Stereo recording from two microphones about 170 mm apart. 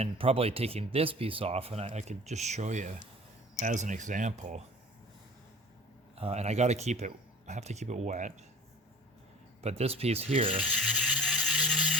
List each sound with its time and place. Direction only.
0.0 s speech: 35° right (ahead or behind)
6.1 s speech: 40° right (ahead or behind)
9.6 s speech: 35° right (ahead or behind)
11.2 s a sound: 5° right (ahead or behind)